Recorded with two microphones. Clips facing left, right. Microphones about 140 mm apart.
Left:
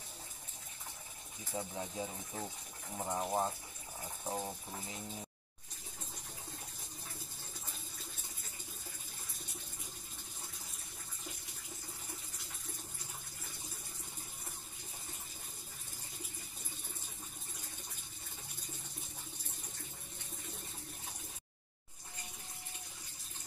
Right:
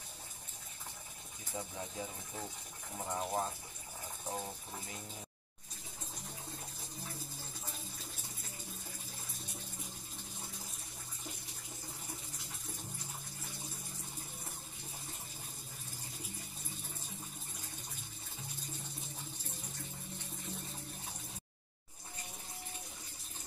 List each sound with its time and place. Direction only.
1.5 s speech: 20° left (ahead or behind)